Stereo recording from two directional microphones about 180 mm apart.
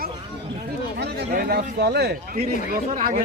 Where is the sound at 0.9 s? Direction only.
65° right (ahead or behind).